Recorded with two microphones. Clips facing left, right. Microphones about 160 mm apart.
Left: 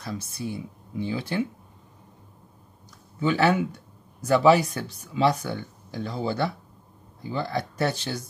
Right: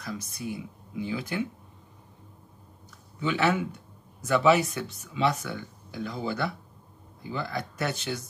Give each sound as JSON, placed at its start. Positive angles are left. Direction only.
{"t": 0.0, "sound": "speech", "side_deg": 30}
{"t": 3.2, "sound": "speech", "side_deg": 40}